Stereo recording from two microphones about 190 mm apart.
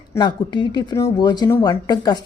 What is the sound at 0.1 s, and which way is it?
Speech, 25° left (ahead or behind).